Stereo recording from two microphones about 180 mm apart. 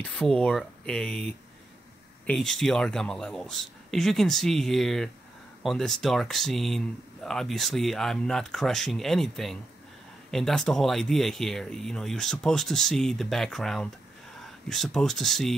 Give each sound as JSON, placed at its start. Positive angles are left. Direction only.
{"t": 0.0, "sound": "speech", "side_deg": 0}
{"t": 2.2, "sound": "speech", "side_deg": 5}